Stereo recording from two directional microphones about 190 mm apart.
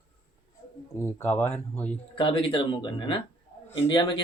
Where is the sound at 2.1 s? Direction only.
25° left (ahead or behind).